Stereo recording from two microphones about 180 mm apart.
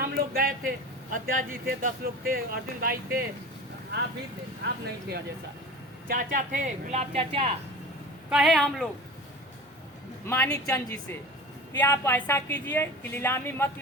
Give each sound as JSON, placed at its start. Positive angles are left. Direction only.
{"t": 0.0, "sound": "a sound", "side_deg": -55}
{"t": 1.1, "sound": "speech", "side_deg": -50}
{"t": 4.6, "sound": "speech", "side_deg": -60}
{"t": 6.1, "sound": "speech", "side_deg": -50}
{"t": 8.3, "sound": "speech", "side_deg": 0}
{"t": 10.2, "sound": "a woman's voice", "side_deg": 15}